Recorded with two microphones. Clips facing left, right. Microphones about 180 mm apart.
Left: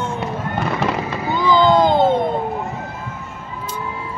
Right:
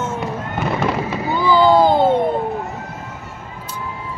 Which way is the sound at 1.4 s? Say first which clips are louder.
Right 1 dB; 10° right (ahead or behind).